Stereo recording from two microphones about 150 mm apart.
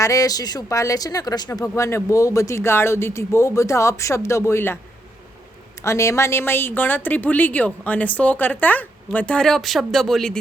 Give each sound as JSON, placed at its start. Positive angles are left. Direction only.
{"t": 0.0, "sound": "speech", "side_deg": 20}
{"t": 5.8, "sound": "a woman's voice", "side_deg": 20}